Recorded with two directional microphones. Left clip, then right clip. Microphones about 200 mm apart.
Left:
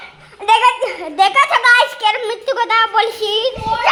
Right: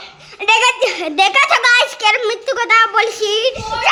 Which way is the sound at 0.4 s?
15° right (ahead or behind).